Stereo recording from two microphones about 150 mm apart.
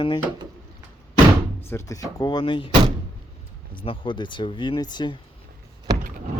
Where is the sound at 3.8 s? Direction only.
35° left (ahead or behind).